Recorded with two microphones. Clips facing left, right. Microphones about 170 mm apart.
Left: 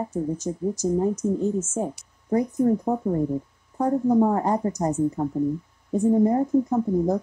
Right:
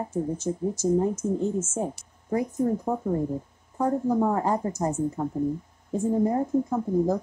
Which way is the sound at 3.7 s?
15° left (ahead or behind).